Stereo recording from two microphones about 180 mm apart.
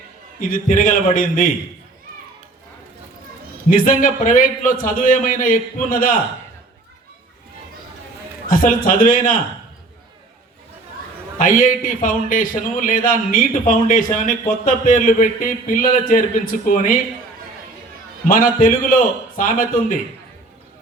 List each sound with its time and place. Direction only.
0.4 s a man's voice: 45° left (ahead or behind)
3.7 s a man's voice: 50° left (ahead or behind)
8.4 s a man's voice: 50° left (ahead or behind)
11.3 s a man's voice: 50° left (ahead or behind)
18.3 s a man's voice: 50° left (ahead or behind)